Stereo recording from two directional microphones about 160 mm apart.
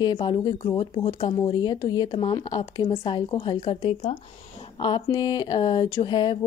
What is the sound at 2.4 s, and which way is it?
Speech, 30° left (ahead or behind).